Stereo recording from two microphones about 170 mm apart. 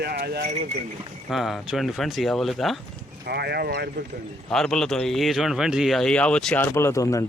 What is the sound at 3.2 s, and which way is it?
Speech, 70° right (ahead or behind).